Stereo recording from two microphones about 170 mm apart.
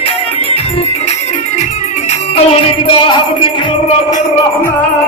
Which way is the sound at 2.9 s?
30° left (ahead or behind).